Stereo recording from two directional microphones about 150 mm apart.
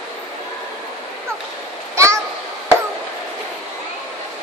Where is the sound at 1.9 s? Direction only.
20° right (ahead or behind).